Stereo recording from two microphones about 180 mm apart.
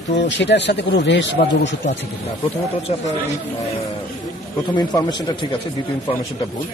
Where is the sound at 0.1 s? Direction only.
75° left (ahead or behind).